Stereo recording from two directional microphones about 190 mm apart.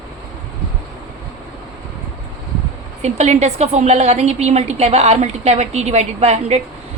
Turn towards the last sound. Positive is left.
turn(degrees=-35)  # may be behind; listen again after turning